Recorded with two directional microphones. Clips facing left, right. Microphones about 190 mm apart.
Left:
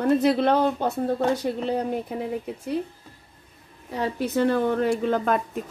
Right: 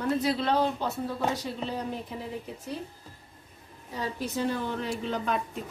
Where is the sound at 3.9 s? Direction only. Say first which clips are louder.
Left 7 dB; 60° left (ahead or behind).